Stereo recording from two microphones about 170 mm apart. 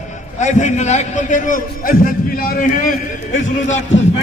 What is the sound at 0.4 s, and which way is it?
A man's voice, 45° left (ahead or behind).